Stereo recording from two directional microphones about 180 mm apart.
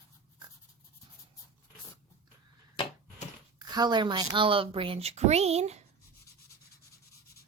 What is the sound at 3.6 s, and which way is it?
Speech, 25° right (ahead or behind).